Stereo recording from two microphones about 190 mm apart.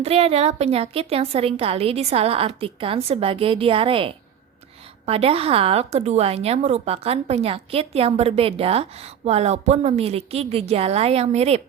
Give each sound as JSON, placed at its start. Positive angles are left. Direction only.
{"t": 0.0, "sound": "a woman's voice", "side_deg": -30}